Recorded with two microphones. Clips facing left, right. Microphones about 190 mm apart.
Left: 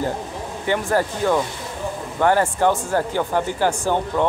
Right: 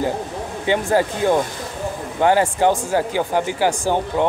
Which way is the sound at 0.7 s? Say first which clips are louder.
Right 2 dB; 15° right (ahead or behind).